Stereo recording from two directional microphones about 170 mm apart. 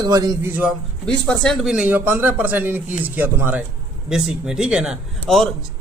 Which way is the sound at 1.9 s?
10° right (ahead or behind).